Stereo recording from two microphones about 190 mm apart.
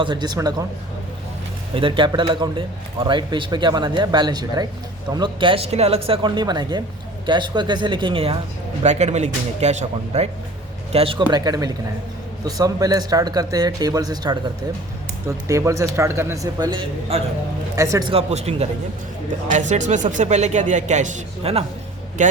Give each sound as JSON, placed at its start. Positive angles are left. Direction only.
{"t": 0.0, "sound": "speech", "side_deg": -25}
{"t": 1.7, "sound": "a man's voice", "side_deg": -25}
{"t": 15.4, "sound": "a man's voice", "side_deg": -15}
{"t": 18.1, "sound": "a man's voice", "side_deg": -35}